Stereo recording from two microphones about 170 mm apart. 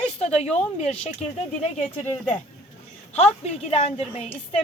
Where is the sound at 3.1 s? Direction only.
40° left (ahead or behind).